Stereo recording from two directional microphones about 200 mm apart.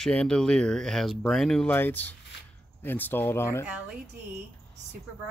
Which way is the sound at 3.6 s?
5° right (ahead or behind).